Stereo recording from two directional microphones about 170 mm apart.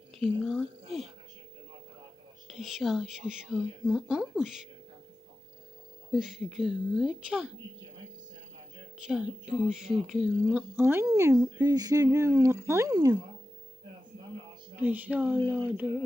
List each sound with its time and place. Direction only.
0.1 s speech: centre (ahead or behind)
2.5 s speech: centre (ahead or behind)
6.1 s speech: centre (ahead or behind)
9.0 s speech: 5° right (ahead or behind); by 13.1 s 20° right (ahead or behind)
14.8 s speech: 10° right (ahead or behind)